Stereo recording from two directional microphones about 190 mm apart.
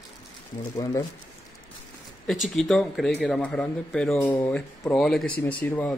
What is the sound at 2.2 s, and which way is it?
A man's voice, centre (ahead or behind).